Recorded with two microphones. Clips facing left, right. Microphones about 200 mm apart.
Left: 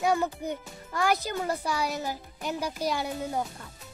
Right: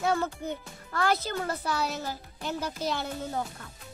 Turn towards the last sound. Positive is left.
turn(degrees=15)  # may be behind; listen again after turning